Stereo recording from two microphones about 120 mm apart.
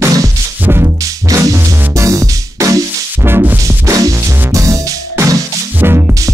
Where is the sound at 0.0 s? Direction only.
20° right (ahead or behind).